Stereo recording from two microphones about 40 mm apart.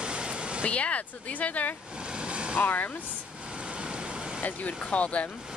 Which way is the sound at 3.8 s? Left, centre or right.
Right.